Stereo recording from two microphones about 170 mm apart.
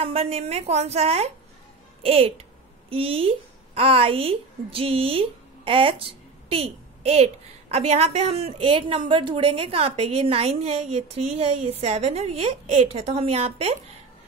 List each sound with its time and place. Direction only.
0.0 s a woman's voice: 35° right (ahead or behind)